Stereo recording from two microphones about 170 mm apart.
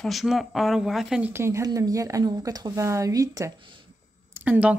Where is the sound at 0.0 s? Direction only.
Centre (ahead or behind); by 3.5 s 20° right (ahead or behind).